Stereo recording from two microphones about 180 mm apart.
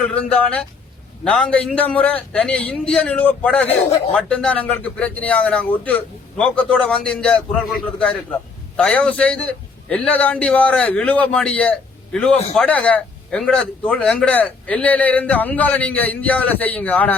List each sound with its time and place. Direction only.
0.0 s a man's voice: 5° left (ahead or behind)
3.7 s speech: 35° left (ahead or behind)
4.1 s a man's voice: 5° left (ahead or behind)